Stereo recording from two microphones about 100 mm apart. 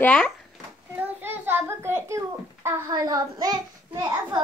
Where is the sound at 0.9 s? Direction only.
20° right (ahead or behind).